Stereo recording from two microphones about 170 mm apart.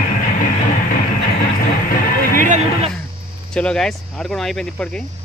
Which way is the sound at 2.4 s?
45° right (ahead or behind).